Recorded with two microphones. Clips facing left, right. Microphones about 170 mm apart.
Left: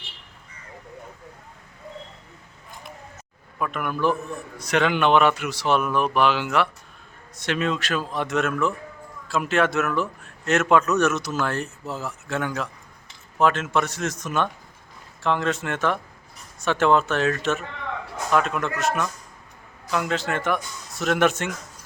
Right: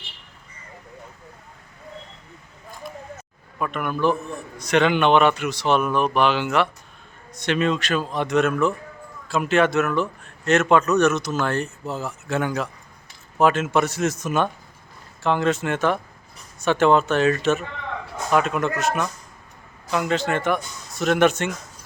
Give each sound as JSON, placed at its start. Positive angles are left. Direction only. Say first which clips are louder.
{"t": 3.6, "sound": "a man's voice", "louder": "right 2 dB", "side_deg": 5}